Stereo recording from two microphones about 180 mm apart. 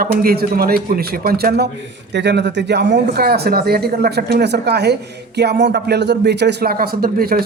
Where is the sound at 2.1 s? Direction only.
70° right (ahead or behind).